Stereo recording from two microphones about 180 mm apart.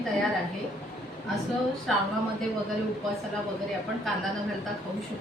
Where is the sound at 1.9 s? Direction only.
Centre (ahead or behind).